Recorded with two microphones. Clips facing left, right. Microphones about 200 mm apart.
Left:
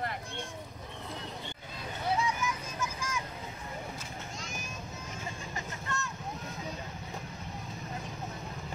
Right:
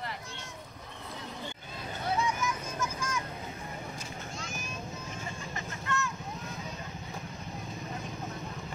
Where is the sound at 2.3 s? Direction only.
15° left (ahead or behind).